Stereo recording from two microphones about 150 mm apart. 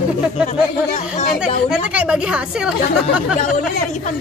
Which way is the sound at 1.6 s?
5° right (ahead or behind).